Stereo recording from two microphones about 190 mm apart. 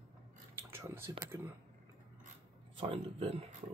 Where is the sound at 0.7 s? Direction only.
15° right (ahead or behind).